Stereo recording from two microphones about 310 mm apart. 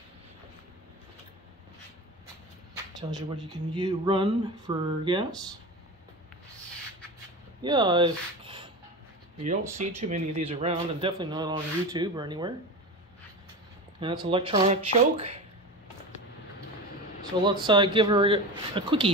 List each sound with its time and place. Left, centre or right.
3.0 s speech: centre
7.6 s speech: centre
9.8 s speech: right
13.9 s speech: centre
17.6 s speech: centre